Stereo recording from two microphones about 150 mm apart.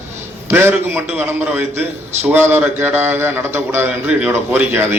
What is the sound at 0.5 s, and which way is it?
A man's voice, 15° right (ahead or behind).